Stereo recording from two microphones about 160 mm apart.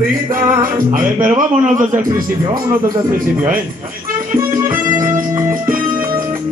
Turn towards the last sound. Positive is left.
turn(degrees=-20)  # may be behind; listen again after turning